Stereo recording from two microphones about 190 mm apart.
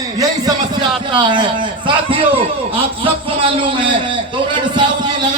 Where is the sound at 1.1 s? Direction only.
25° right (ahead or behind).